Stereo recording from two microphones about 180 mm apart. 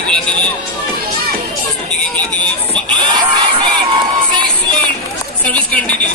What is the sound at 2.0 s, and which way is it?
Music, 5° left (ahead or behind).